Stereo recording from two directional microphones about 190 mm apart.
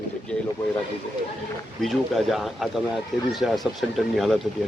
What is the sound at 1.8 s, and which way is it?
Speech, centre (ahead or behind).